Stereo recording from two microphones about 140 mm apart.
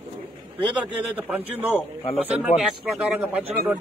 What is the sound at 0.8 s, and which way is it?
Speech, 10° right (ahead or behind).